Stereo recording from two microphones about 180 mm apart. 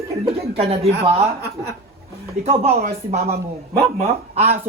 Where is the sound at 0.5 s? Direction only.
35° right (ahead or behind).